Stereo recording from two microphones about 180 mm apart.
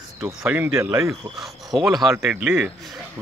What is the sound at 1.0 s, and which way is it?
Speech, centre (ahead or behind).